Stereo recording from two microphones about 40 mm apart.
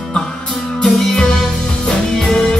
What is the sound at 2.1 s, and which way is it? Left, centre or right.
Music, centre.